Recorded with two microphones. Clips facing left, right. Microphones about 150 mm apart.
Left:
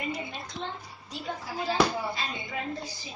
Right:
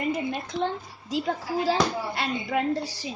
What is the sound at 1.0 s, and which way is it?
Speech, 90° right.